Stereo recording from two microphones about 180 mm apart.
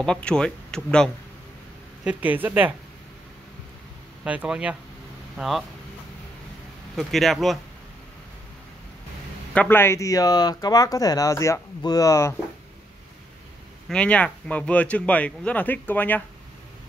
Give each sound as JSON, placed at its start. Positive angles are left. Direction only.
{"t": 0.0, "sound": "speech", "side_deg": 5}
{"t": 2.0, "sound": "speech", "side_deg": -10}
{"t": 4.2, "sound": "speech", "side_deg": -5}
{"t": 7.0, "sound": "speech", "side_deg": 0}
{"t": 9.5, "sound": "speech", "side_deg": 10}
{"t": 13.8, "sound": "speech", "side_deg": 5}